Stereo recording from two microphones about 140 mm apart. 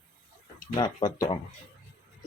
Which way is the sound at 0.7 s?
25° left (ahead or behind).